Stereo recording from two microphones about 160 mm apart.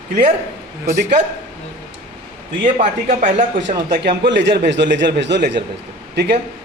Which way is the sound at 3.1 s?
50° right (ahead or behind).